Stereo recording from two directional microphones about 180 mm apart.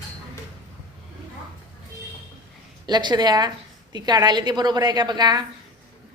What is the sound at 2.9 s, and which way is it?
A woman's voice, 25° right (ahead or behind).